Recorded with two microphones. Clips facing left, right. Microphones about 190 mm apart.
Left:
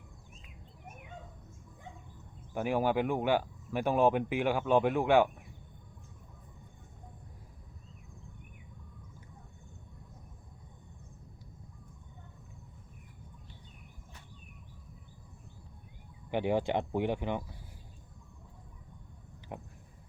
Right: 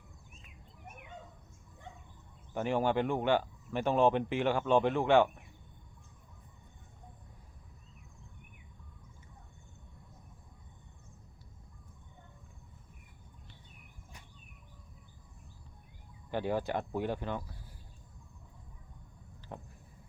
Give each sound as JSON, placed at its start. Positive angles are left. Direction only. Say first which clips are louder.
{"t": 2.5, "sound": "speech", "louder": "left 1 dB", "side_deg": 10}
{"t": 16.3, "sound": "speech", "louder": "left 3 dB", "side_deg": 20}
{"t": 19.5, "sound": "a sound", "louder": "left 2 dB", "side_deg": 15}